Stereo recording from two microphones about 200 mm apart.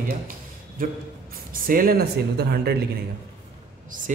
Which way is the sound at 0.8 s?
45° right (ahead or behind).